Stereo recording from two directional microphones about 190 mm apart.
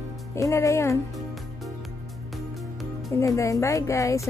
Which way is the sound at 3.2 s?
15° left (ahead or behind).